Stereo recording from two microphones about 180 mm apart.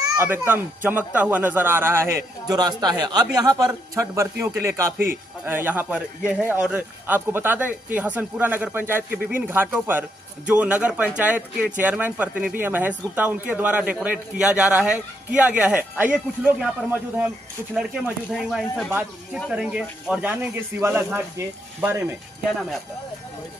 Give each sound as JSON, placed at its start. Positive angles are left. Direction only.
{"t": 0.0, "sound": "speech", "side_deg": -10}
{"t": 17.7, "sound": "speech", "side_deg": 0}